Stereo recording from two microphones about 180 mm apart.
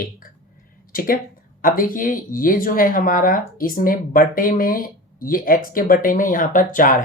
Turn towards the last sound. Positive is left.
turn(degrees=50)  # may be behind; listen again after turning